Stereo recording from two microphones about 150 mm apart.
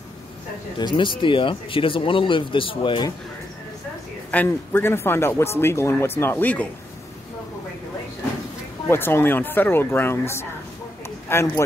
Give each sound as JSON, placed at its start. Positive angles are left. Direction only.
{"t": 0.7, "sound": "speech", "side_deg": 30}
{"t": 4.3, "sound": "speech", "side_deg": 10}
{"t": 8.8, "sound": "speech", "side_deg": 15}